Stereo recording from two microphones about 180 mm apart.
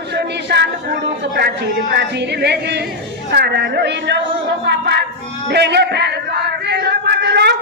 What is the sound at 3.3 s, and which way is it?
Speech, 65° right (ahead or behind).